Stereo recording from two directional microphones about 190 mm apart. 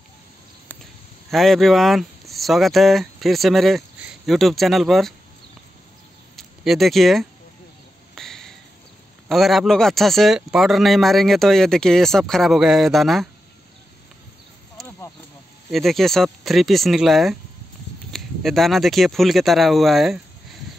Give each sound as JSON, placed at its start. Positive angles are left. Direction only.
{"t": 1.3, "sound": "speech", "side_deg": 0}
{"t": 6.3, "sound": "speech", "side_deg": 0}
{"t": 8.1, "sound": "a sound", "side_deg": 0}
{"t": 9.3, "sound": "a man's voice", "side_deg": 0}
{"t": 14.8, "sound": "a sound", "side_deg": 0}
{"t": 15.7, "sound": "a man's voice", "side_deg": 0}